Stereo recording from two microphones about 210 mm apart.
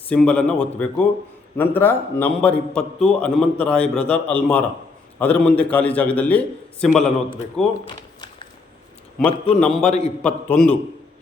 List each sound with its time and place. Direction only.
0.1 s a man's voice: 5° left (ahead or behind)
7.9 s a sound: 25° left (ahead or behind)
9.1 s a man's voice: 5° left (ahead or behind)